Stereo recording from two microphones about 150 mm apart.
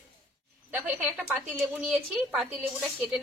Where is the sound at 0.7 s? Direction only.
10° right (ahead or behind).